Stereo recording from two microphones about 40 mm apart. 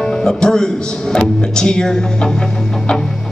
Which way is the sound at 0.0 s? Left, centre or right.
Centre.